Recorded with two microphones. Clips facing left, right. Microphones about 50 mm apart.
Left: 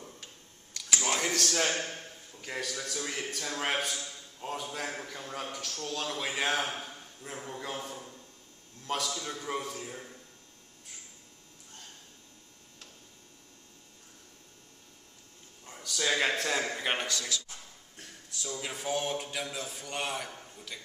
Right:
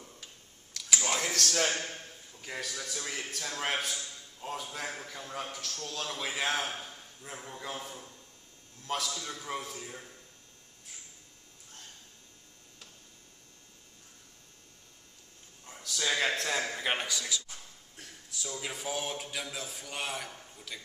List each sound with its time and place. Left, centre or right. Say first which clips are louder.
0.7 s a sound: left 1 dB; centre
2.3 s a man's voice: left 2 dB; centre
15.6 s a man's voice: left 2 dB; centre
17.3 s speech: even; centre
17.9 s a man's voice: even; centre